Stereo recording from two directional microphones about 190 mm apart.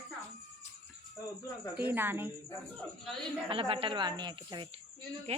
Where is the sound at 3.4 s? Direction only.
30° right (ahead or behind).